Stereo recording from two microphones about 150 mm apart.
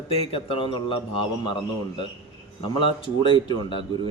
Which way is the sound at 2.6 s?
35° left (ahead or behind).